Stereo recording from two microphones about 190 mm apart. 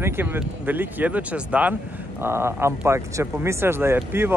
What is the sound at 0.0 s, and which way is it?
Speech, 10° right (ahead or behind).